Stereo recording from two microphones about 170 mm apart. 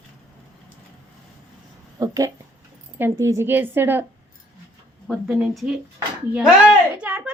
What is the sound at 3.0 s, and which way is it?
A woman's voice, 15° right (ahead or behind).